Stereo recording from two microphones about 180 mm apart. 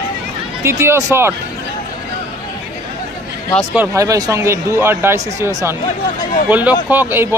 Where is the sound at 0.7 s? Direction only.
15° right (ahead or behind).